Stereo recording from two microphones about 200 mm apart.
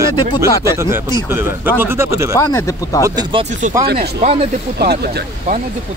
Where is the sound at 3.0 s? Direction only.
20° right (ahead or behind).